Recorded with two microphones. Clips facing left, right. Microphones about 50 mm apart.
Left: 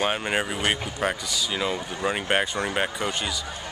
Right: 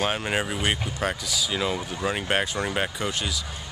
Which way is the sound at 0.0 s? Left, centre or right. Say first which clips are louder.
Left 1 dB; centre.